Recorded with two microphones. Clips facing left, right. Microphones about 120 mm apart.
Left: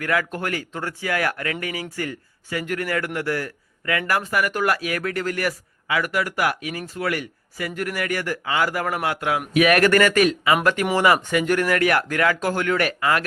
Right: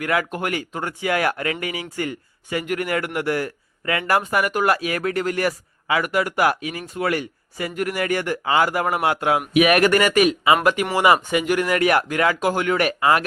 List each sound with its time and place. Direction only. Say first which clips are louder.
0.0 s speech: right 1 dB; 20° right (ahead or behind)